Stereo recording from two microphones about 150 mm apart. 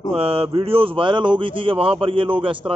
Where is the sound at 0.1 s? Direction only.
40° right (ahead or behind).